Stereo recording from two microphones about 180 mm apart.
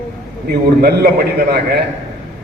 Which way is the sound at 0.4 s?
60° right (ahead or behind).